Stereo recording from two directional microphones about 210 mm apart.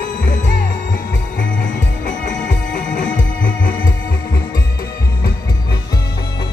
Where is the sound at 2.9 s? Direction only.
40° left (ahead or behind).